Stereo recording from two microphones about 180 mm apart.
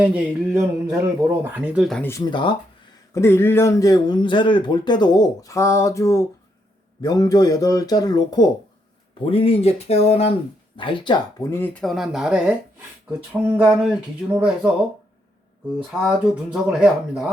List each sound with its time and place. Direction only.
0.0 s a sound: 5° right (ahead or behind)
0.5 s speech: 20° right (ahead or behind)
1.5 s speech: 10° right (ahead or behind)
2.0 s speech: 20° left (ahead or behind)
3.2 s speech: 15° left (ahead or behind)
9.2 s speech: 30° left (ahead or behind)
11.5 s speech: 10° left (ahead or behind)
13.4 s a sound: 10° right (ahead or behind)
15.9 s speech: 5° right (ahead or behind)